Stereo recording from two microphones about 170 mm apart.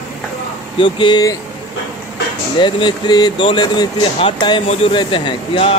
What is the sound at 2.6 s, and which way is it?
Speech, 25° left (ahead or behind).